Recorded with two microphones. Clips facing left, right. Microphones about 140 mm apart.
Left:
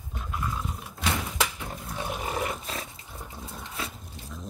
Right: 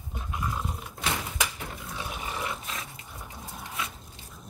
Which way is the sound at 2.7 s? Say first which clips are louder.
Left 3 dB; 35° left (ahead or behind).